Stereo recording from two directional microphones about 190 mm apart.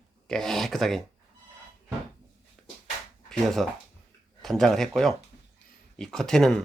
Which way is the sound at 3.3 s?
Centre (ahead or behind).